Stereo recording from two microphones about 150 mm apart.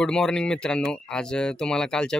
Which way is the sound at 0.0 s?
5° left (ahead or behind).